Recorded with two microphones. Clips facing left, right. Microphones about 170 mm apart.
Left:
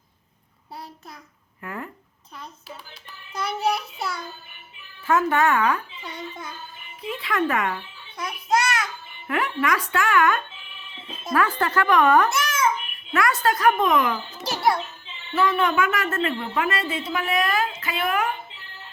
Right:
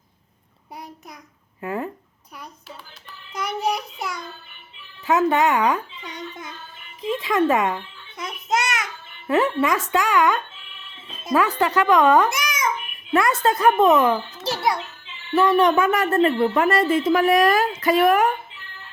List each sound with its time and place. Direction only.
1.6 s a child's voice: 20° right (ahead or behind)
3.4 s a child's voice: 15° right (ahead or behind)
7.3 s a child's voice: 20° right (ahead or behind); by 18.3 s 45° right (ahead or behind)